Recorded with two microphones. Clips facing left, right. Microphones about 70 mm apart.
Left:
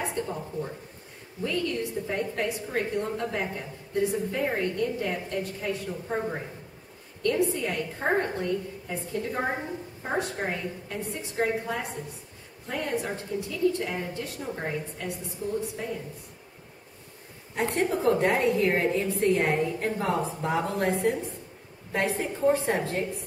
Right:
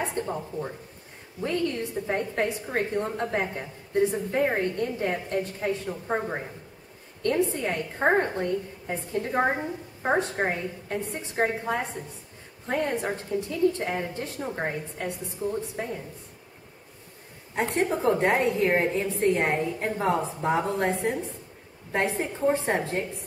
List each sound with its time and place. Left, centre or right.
0.0 s a sound: right
1.4 s a woman's voice: right
17.6 s a woman's voice: right